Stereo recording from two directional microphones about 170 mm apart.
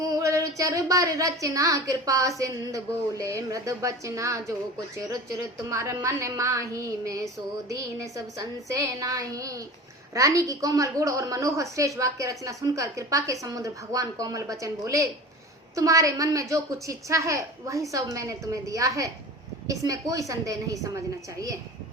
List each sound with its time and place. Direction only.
0.1 s a woman's voice: 20° right (ahead or behind)
5.6 s a woman's voice: 20° right (ahead or behind)